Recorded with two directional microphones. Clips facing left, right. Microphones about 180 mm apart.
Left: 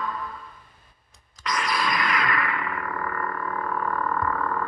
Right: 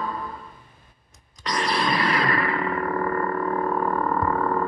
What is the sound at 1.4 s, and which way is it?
Roar, 35° right (ahead or behind).